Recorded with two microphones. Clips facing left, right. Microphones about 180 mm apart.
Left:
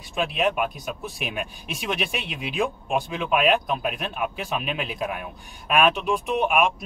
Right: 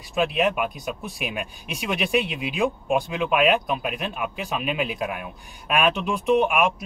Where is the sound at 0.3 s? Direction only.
Centre (ahead or behind).